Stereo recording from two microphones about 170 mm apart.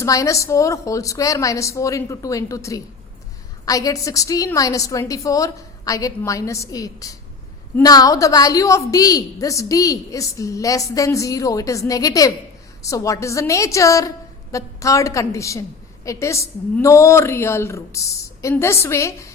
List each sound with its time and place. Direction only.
0.0 s a woman's voice: 20° left (ahead or behind)